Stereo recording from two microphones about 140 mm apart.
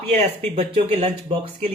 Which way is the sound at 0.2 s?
50° right (ahead or behind).